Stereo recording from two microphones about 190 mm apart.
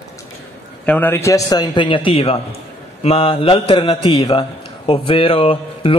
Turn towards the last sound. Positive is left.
turn(degrees=30)  # may be behind; listen again after turning